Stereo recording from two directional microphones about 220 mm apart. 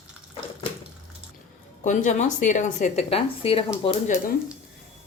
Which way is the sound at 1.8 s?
35° left (ahead or behind).